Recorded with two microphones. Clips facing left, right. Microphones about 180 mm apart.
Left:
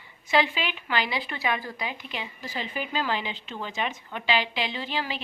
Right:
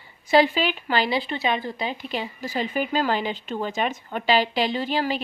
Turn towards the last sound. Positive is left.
turn(degrees=-40)  # may be behind; listen again after turning